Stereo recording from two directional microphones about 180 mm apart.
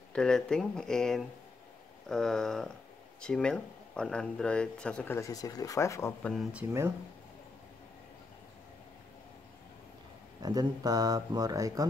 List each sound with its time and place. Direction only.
0.1 s speech: 5° left (ahead or behind)
10.4 s speech: 20° right (ahead or behind)